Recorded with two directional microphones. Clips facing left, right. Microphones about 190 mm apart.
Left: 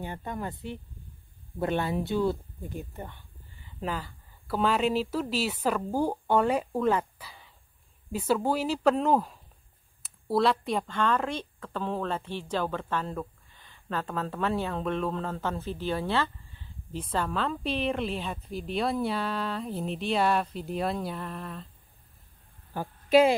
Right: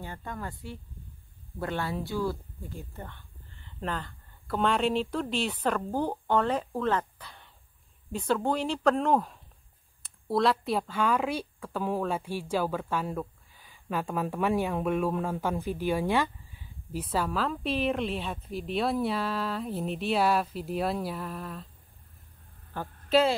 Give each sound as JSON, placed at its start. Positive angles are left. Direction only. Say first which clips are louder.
{"t": 0.0, "sound": "speech", "louder": "left 3 dB", "side_deg": 20}
{"t": 22.8, "sound": "a woman's voice", "louder": "left 3 dB", "side_deg": 10}